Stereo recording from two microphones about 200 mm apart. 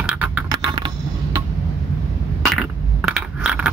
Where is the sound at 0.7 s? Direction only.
25° right (ahead or behind).